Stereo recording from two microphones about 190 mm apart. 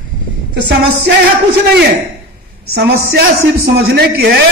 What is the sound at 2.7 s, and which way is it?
Speech, 60° right (ahead or behind).